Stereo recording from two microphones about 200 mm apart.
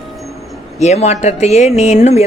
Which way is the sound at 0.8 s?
35° left (ahead or behind).